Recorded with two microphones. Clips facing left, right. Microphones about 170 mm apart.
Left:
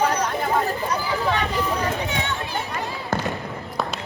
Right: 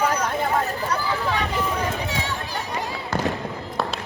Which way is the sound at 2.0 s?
35° right (ahead or behind).